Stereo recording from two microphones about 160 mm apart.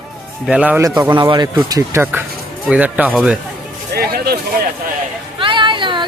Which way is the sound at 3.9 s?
75° right (ahead or behind).